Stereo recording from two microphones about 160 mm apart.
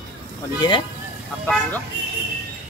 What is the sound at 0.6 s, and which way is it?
Speech, 30° left (ahead or behind).